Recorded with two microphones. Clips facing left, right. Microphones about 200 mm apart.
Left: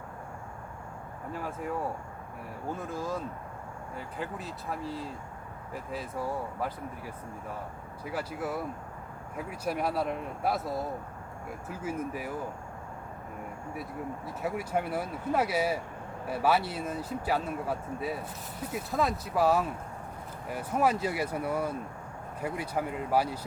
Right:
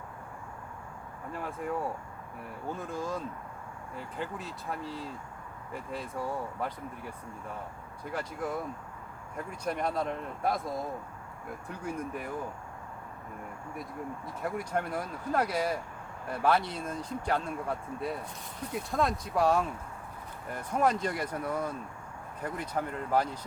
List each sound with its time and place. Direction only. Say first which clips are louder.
1.3 s speech: even; centre (ahead or behind)
2.7 s speech: left 1 dB; centre (ahead or behind)
11.7 s speech: left 2 dB; 5° left (ahead or behind)
14.4 s speech: left 1 dB; 5° left (ahead or behind)